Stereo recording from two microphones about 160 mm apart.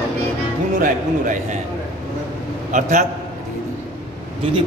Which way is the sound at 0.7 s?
55° right (ahead or behind).